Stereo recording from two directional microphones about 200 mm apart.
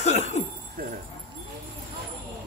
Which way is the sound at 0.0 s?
35° left (ahead or behind).